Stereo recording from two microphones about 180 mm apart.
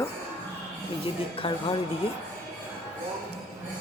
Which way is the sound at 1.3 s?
30° left (ahead or behind).